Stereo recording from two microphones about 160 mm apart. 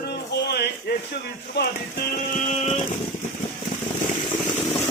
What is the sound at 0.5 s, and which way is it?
Speech, 90° left.